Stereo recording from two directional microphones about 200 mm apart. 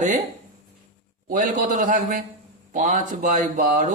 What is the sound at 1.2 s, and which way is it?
Speech, 45° right (ahead or behind).